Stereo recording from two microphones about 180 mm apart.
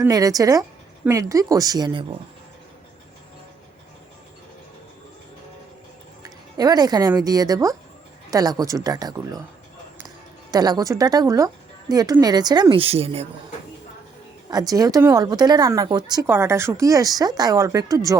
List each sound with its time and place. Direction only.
0.0 s speech: 20° right (ahead or behind)
6.2 s music: 20° right (ahead or behind)
7.2 s speech: 20° right (ahead or behind)
10.5 s speech: 20° right (ahead or behind)
14.5 s speech: 20° right (ahead or behind)